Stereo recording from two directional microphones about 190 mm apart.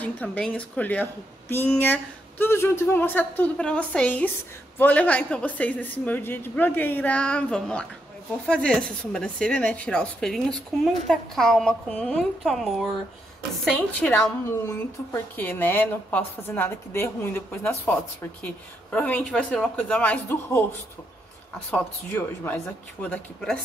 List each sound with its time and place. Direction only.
0.0 s a woman's voice: 10° left (ahead or behind)
15.3 s a woman's voice: 10° left (ahead or behind)
21.6 s a woman's voice: 10° left (ahead or behind)